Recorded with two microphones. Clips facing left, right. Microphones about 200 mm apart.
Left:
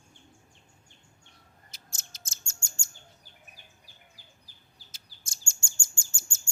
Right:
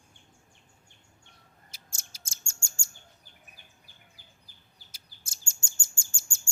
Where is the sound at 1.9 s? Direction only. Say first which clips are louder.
Left 2 dB; 10° right (ahead or behind).